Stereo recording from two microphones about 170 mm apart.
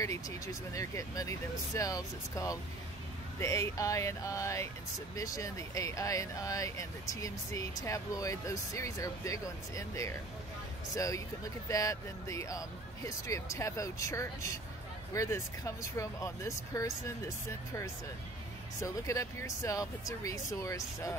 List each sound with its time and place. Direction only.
0.0 s speech: 20° left (ahead or behind)